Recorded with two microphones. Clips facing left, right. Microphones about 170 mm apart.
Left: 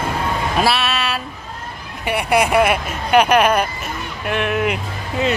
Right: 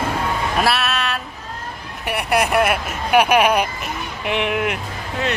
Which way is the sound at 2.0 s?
Centre (ahead or behind).